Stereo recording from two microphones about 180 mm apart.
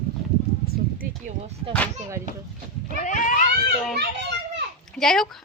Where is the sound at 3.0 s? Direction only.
45° left (ahead or behind).